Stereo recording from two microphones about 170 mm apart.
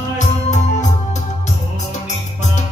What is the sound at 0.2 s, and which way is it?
Music, 45° left (ahead or behind).